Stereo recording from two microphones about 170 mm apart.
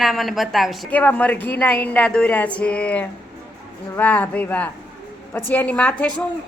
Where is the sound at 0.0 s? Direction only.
Centre (ahead or behind).